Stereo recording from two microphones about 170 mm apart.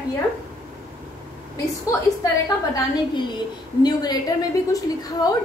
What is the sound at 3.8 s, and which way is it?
A woman's voice, 25° left (ahead or behind).